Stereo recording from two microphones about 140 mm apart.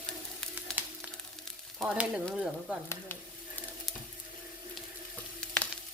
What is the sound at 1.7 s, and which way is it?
Speech, 5° right (ahead or behind).